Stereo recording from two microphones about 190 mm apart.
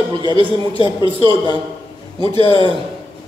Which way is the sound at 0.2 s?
25° right (ahead or behind).